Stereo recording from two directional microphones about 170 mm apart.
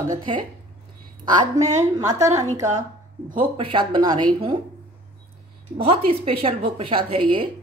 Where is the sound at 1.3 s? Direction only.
25° right (ahead or behind).